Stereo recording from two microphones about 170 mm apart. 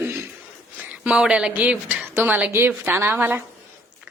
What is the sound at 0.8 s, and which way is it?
A woman's voice, 5° right (ahead or behind).